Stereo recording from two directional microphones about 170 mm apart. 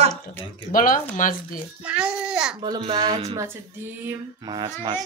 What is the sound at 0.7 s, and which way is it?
Speech, 55° left (ahead or behind).